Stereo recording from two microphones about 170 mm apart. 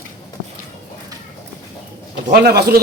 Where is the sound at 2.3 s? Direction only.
70° right (ahead or behind).